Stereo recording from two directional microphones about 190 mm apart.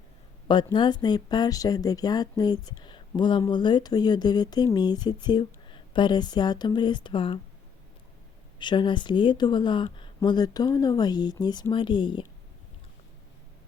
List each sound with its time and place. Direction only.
0.4 s speech: 25° left (ahead or behind)
8.5 s speech: 25° left (ahead or behind)